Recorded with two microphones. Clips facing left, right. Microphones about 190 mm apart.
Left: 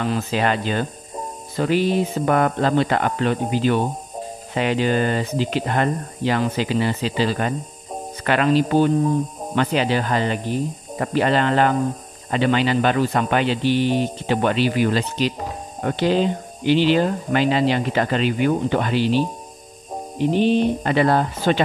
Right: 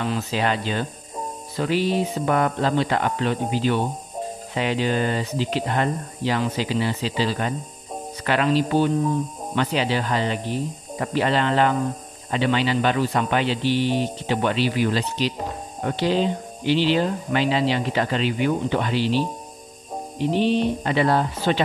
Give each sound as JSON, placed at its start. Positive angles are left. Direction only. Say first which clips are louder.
{"t": 0.0, "sound": "speech", "louder": "left 3 dB", "side_deg": 50}